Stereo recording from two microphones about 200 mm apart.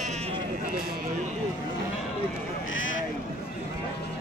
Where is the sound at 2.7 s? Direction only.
75° left (ahead or behind).